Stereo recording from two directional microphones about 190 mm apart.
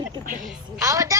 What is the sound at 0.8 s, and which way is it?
Speech, 15° right (ahead or behind).